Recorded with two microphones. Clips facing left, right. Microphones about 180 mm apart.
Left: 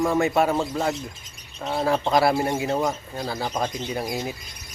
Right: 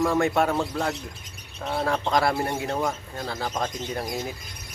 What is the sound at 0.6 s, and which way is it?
Speech, 15° left (ahead or behind).